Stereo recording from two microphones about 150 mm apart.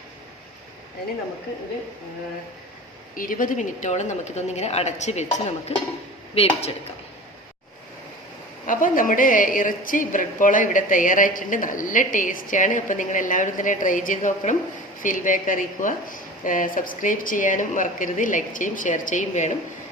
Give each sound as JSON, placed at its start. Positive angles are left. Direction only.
{"t": 3.2, "sound": "speech", "side_deg": 65}
{"t": 8.6, "sound": "a woman's voice", "side_deg": 65}